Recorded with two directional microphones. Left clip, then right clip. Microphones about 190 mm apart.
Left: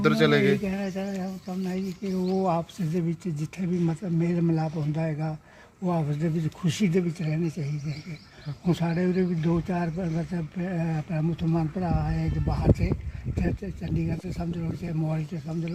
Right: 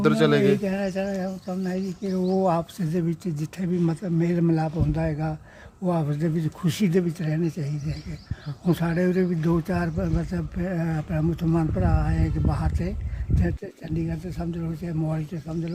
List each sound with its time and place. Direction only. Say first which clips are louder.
0.0 s speech: right 2 dB; 10° right (ahead or behind)